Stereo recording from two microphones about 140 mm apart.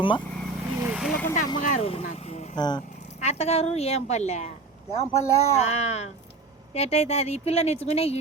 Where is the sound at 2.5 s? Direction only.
30° left (ahead or behind).